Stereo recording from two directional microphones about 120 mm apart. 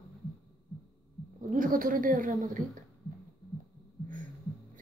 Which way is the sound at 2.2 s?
90° right.